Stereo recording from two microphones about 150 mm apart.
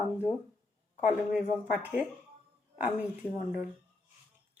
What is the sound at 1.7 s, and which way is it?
Speech, 10° right (ahead or behind).